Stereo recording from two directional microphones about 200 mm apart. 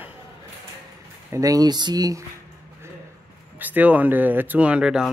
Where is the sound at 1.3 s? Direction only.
15° right (ahead or behind).